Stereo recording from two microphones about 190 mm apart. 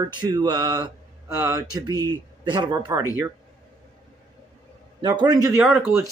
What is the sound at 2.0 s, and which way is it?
A man's voice, 25° right (ahead or behind).